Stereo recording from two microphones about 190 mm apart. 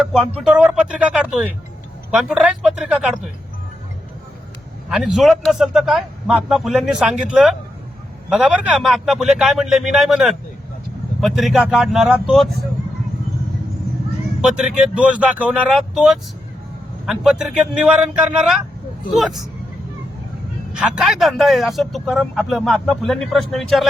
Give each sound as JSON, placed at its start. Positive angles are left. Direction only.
{"t": 0.0, "sound": "a man's voice", "side_deg": 0}
{"t": 4.9, "sound": "a man's voice", "side_deg": 0}
{"t": 14.5, "sound": "a man's voice", "side_deg": -5}
{"t": 20.7, "sound": "a man's voice", "side_deg": -5}